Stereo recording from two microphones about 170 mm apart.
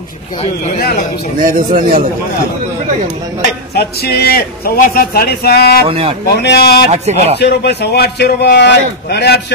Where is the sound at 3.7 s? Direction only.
70° left (ahead or behind).